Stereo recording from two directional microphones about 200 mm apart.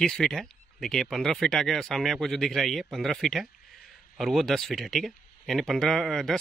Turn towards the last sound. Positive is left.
turn(degrees=0)  # may be behind; listen again after turning